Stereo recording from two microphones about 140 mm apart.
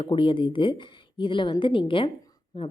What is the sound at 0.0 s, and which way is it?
Speech, 40° left (ahead or behind).